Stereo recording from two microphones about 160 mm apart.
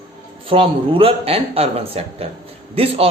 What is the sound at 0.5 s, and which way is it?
Speech, 35° right (ahead or behind).